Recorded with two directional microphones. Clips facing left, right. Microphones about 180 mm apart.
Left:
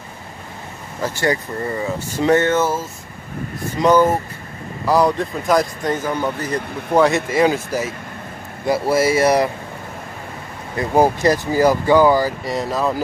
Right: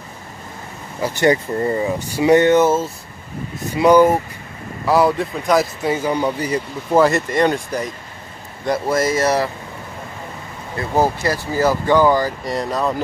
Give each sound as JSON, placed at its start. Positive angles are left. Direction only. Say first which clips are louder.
{"t": 1.0, "sound": "speech", "louder": "right 4 dB", "side_deg": -20}
{"t": 2.0, "sound": "speech", "louder": "right 3 dB", "side_deg": -10}
{"t": 3.7, "sound": "speech", "louder": "right 3 dB", "side_deg": -10}
{"t": 10.8, "sound": "speech", "louder": "left 3 dB", "side_deg": 20}